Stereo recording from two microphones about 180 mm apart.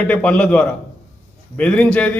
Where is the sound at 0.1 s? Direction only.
5° left (ahead or behind).